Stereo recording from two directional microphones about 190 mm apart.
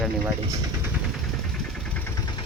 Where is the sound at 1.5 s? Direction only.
5° left (ahead or behind).